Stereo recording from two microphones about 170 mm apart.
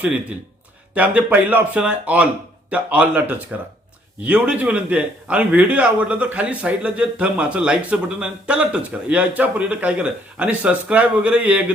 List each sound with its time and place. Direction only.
0.0 s a man's voice: 10° right (ahead or behind)